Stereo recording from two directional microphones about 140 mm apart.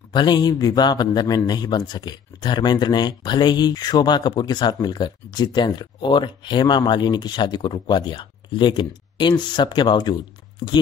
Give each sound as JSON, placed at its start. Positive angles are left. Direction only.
{"t": 0.1, "sound": "a man's voice", "side_deg": 30}